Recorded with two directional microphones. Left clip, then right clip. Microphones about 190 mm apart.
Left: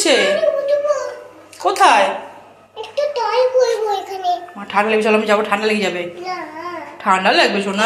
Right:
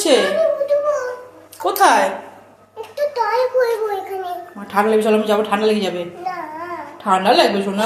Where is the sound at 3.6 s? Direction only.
45° right (ahead or behind).